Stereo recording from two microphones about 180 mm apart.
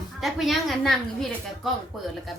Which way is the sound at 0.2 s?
Centre (ahead or behind).